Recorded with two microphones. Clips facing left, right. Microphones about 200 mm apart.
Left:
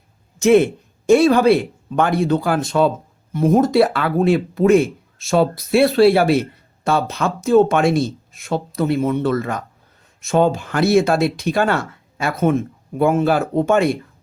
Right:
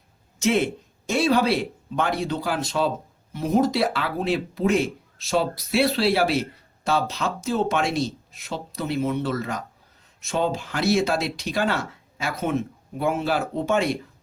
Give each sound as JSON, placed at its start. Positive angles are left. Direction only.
{"t": 0.3, "sound": "speech", "side_deg": 50}